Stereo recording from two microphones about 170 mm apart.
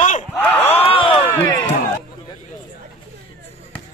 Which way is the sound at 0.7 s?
35° left (ahead or behind).